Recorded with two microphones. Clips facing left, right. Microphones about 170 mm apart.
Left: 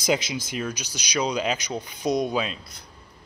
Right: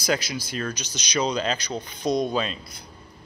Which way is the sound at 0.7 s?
10° left (ahead or behind).